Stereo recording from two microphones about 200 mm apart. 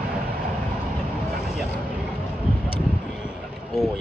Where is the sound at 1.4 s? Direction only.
35° left (ahead or behind).